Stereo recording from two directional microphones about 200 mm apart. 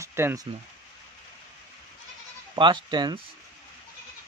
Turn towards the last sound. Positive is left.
turn(degrees=-20)  # may be behind; listen again after turning